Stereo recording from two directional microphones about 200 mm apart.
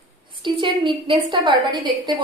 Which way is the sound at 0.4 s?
25° right (ahead or behind).